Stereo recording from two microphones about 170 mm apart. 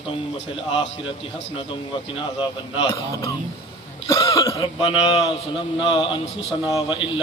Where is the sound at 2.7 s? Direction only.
20° left (ahead or behind).